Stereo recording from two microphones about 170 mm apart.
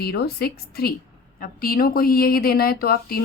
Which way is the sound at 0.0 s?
65° left (ahead or behind).